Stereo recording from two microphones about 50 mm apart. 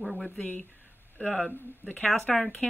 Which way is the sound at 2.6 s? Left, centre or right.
Centre.